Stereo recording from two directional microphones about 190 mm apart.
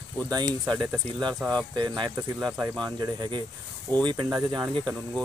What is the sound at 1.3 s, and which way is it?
Speech, 5° left (ahead or behind).